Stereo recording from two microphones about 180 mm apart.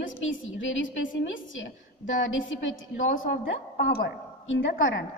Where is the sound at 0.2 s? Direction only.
90° left.